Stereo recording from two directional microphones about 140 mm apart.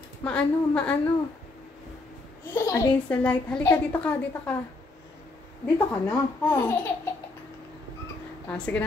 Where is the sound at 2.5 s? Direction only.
25° left (ahead or behind).